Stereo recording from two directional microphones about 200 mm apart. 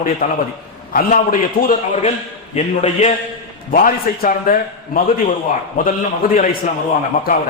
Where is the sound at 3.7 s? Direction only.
45° left (ahead or behind).